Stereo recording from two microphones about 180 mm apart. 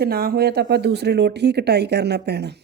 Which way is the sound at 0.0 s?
60° right (ahead or behind).